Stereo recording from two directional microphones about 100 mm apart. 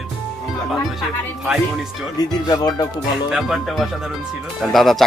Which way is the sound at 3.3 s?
Centre (ahead or behind).